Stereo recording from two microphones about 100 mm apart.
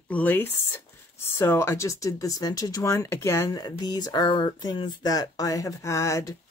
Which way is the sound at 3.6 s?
45° left (ahead or behind).